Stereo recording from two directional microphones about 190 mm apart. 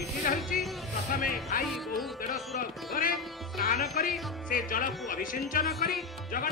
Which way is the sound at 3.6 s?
45° left (ahead or behind).